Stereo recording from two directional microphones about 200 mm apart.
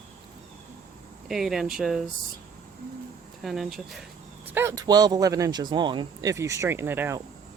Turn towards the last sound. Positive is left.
turn(degrees=-10)  # may be behind; listen again after turning